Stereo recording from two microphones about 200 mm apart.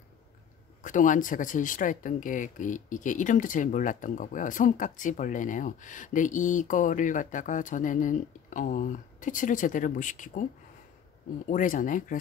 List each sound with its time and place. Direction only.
0.8 s speech: 40° left (ahead or behind)
11.4 s speech: 40° left (ahead or behind)